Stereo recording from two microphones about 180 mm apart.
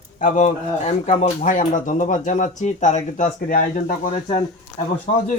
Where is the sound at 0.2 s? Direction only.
45° left (ahead or behind).